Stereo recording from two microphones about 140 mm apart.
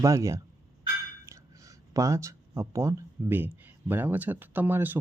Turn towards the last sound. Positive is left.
turn(degrees=-15)  # may be behind; listen again after turning